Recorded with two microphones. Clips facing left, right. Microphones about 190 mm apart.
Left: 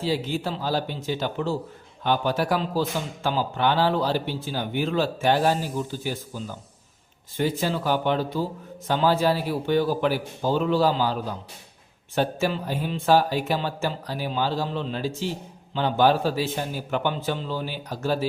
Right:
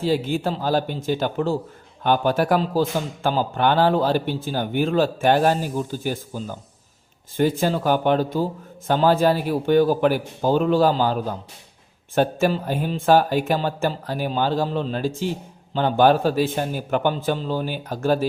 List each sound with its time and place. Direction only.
0.0 s a man's voice: 50° right (ahead or behind)